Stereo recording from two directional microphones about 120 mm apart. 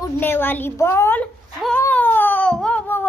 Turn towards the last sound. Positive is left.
turn(degrees=15)  # may be behind; listen again after turning